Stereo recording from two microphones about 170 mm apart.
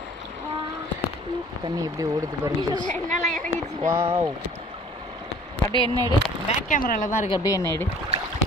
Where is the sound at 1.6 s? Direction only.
20° right (ahead or behind).